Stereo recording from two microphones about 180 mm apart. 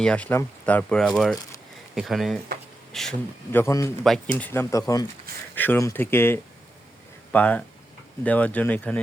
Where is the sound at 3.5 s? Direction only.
15° left (ahead or behind).